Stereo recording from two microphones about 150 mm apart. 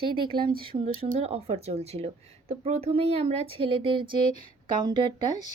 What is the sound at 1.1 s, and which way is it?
A woman's voice, 40° right (ahead or behind).